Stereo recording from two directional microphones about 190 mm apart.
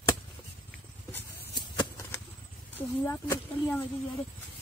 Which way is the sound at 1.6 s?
20° left (ahead or behind).